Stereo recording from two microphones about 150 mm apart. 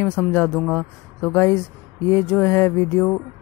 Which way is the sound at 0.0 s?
15° left (ahead or behind).